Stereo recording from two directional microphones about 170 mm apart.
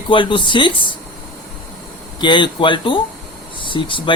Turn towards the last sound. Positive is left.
turn(degrees=30)  # may be behind; listen again after turning